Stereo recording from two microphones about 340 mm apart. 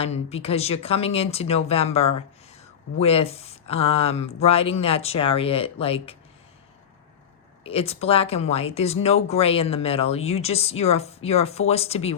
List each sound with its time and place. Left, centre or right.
0.0 s speech: centre
7.6 s speech: centre